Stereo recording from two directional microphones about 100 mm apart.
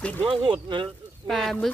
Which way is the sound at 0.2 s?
55° right (ahead or behind).